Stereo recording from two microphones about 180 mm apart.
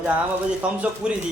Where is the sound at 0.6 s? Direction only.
5° right (ahead or behind).